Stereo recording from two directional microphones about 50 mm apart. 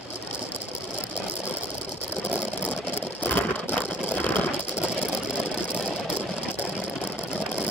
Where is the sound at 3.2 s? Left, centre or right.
Left.